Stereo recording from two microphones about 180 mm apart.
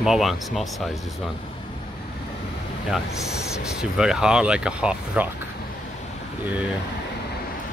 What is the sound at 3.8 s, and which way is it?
Speech, 5° right (ahead or behind).